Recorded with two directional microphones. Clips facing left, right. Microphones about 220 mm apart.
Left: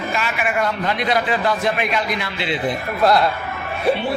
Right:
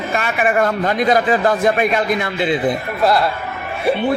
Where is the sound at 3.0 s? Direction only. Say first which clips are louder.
Even; centre (ahead or behind).